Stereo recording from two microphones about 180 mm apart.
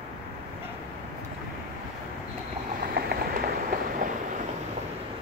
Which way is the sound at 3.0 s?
60° right (ahead or behind).